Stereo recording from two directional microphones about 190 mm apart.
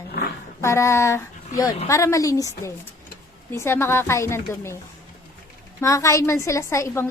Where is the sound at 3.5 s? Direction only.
15° left (ahead or behind).